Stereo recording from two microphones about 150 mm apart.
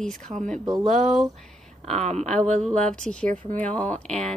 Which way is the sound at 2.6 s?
5° left (ahead or behind).